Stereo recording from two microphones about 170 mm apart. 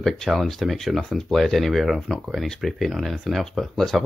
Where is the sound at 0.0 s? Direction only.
Centre (ahead or behind).